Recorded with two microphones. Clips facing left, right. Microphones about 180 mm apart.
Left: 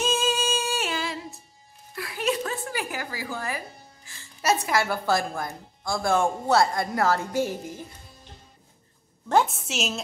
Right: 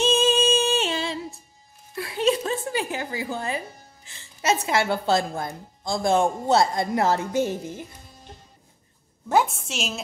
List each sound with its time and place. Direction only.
0.0 s music: 30° right (ahead or behind)
2.0 s a woman's voice: 25° right (ahead or behind)
9.3 s a woman's voice: centre (ahead or behind)